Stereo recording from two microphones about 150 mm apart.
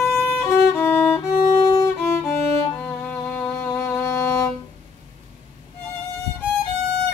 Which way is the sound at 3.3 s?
15° left (ahead or behind).